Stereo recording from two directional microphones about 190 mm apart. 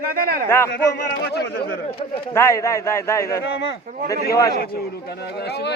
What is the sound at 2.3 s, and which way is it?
A man's voice, 15° left (ahead or behind).